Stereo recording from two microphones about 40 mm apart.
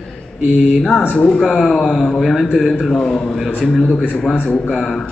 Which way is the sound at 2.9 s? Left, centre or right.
Centre.